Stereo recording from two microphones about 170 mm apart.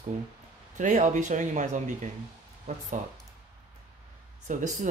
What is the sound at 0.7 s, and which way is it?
Speech, 45° right (ahead or behind).